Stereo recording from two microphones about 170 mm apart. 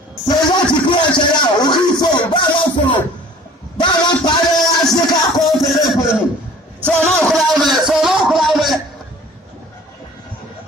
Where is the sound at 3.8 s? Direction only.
25° left (ahead or behind).